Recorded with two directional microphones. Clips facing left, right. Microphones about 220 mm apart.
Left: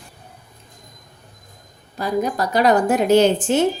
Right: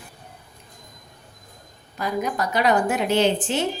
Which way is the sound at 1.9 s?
35° left (ahead or behind).